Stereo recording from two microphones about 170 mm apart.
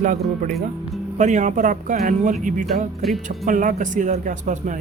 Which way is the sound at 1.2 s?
45° right (ahead or behind).